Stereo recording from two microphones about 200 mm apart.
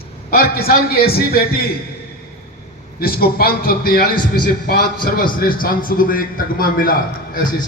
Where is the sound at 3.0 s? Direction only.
50° left (ahead or behind).